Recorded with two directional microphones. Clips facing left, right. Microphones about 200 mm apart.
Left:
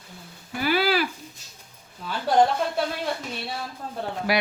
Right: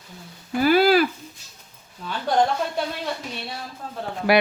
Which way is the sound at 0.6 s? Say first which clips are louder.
Right 6 dB; 45° right (ahead or behind).